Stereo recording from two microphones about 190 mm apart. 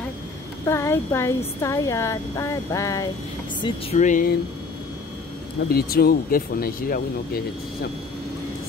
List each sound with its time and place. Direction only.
0.7 s a woman's voice: 15° left (ahead or behind)
3.6 s speech: 35° left (ahead or behind)
5.7 s speech: 55° left (ahead or behind)